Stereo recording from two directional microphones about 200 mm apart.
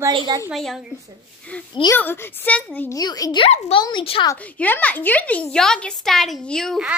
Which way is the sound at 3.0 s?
20° left (ahead or behind).